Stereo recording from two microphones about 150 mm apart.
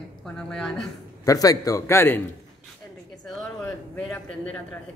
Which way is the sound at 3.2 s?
5° left (ahead or behind).